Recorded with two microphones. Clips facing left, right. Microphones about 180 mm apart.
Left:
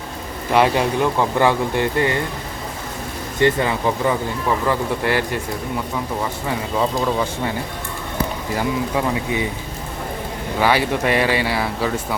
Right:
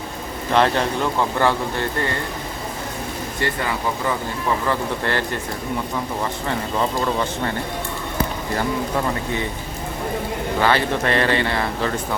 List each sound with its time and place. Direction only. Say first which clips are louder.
0.5 s speech: left 2 dB; 10° left (ahead or behind)
3.4 s speech: left 9 dB; 20° left (ahead or behind)
4.7 s speech: left 3 dB; 10° left (ahead or behind)
6.5 s speech: left 2 dB; 5° left (ahead or behind)
8.5 s speech: left 1 dB; 10° left (ahead or behind)
10.6 s speech: left 2 dB; 10° left (ahead or behind)